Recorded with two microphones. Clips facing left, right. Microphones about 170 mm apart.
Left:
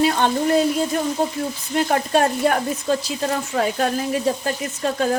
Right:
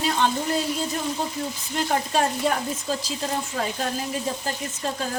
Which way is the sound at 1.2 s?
50° left (ahead or behind).